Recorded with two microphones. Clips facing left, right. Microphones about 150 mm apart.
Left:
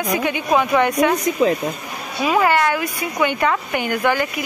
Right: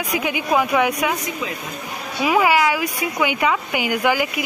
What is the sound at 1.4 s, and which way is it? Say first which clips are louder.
Speech: left 12 dB; 35° left (ahead or behind).